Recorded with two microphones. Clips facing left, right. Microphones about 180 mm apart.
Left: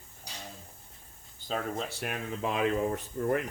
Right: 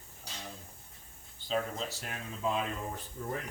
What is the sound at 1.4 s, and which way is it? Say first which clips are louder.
Speech: left 1 dB; 50° left (ahead or behind).